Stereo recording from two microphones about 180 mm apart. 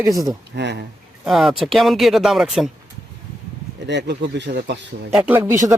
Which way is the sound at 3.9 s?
70° right (ahead or behind).